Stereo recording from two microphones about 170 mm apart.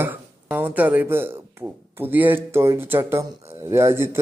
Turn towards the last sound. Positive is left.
turn(degrees=-15)  # may be behind; listen again after turning